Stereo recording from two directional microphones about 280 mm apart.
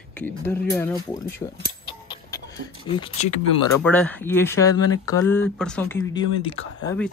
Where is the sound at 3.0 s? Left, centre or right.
Left.